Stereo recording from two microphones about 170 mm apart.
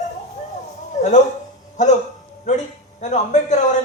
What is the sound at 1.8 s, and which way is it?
A man's voice, 45° left (ahead or behind).